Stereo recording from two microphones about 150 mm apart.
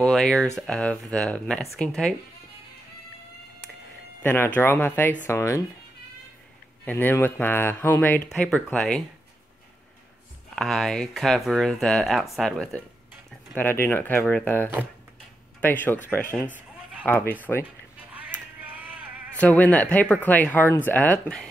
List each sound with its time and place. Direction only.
0.0 s speech: 5° left (ahead or behind)
4.2 s speech: 10° left (ahead or behind)
6.8 s speech: 10° left (ahead or behind)
10.5 s speech: centre (ahead or behind)
18.6 s a sound: 10° right (ahead or behind)
19.4 s speech: 10° left (ahead or behind)